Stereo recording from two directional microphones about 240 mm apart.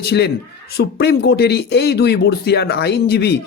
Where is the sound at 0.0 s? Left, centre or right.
Left.